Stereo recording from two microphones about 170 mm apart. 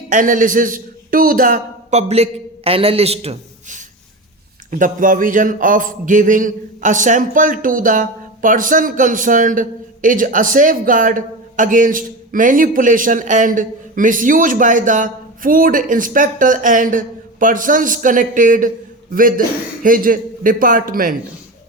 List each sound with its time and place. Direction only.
0.1 s a man's voice: 50° right (ahead or behind)